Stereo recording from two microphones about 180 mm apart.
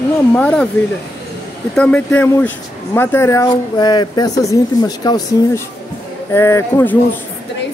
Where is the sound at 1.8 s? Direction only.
10° left (ahead or behind).